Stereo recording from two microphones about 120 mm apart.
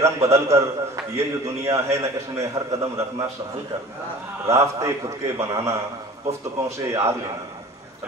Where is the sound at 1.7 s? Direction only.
25° right (ahead or behind).